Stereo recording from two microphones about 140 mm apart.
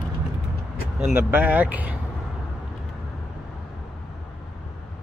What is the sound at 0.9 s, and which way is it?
Speech, 10° right (ahead or behind).